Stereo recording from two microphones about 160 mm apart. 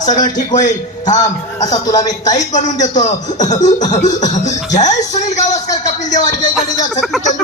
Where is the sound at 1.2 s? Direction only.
25° left (ahead or behind).